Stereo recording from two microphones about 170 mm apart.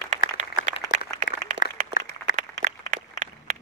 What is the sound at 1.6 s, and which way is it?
Applause, 50° left (ahead or behind).